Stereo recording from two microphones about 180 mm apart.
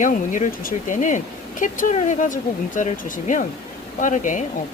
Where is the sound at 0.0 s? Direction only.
45° left (ahead or behind).